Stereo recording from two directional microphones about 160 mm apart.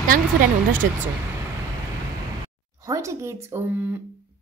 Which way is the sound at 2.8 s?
20° right (ahead or behind).